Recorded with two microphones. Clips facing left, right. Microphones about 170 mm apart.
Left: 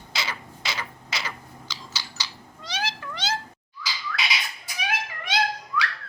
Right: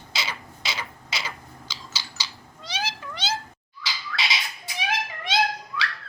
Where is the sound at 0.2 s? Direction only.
20° right (ahead or behind).